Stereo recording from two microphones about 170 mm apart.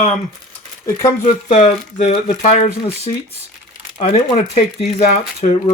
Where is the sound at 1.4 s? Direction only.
40° left (ahead or behind).